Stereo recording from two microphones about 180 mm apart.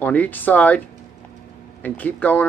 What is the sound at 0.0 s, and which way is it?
Speech, 10° left (ahead or behind).